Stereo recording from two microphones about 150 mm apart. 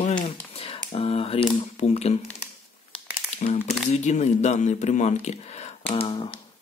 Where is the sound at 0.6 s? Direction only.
40° left (ahead or behind).